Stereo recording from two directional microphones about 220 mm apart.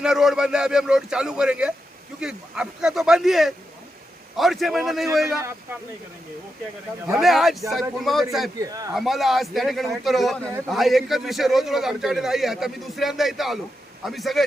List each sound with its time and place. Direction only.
0.0 s a man's voice: centre (ahead or behind)
7.1 s a man's voice: centre (ahead or behind)
8.5 s speech: 15° right (ahead or behind)
8.9 s a man's voice: centre (ahead or behind)